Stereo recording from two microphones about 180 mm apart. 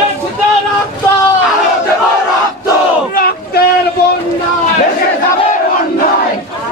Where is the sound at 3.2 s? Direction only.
60° left (ahead or behind).